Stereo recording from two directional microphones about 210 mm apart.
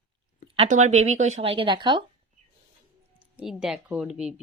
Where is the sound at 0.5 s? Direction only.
35° right (ahead or behind).